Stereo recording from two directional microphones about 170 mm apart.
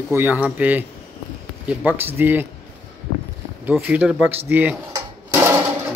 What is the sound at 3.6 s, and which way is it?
Speech, 10° right (ahead or behind).